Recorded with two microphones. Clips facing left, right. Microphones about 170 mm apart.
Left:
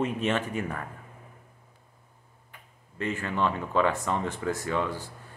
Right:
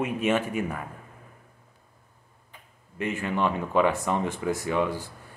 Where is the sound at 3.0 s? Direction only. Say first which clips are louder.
Right 2 dB; 15° right (ahead or behind).